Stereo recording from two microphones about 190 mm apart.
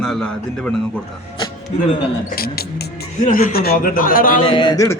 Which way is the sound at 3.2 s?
45° left (ahead or behind).